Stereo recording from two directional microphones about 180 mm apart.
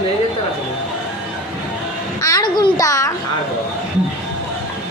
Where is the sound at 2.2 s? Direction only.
20° left (ahead or behind).